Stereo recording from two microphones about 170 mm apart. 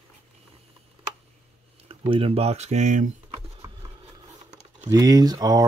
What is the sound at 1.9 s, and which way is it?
Speech, 35° right (ahead or behind).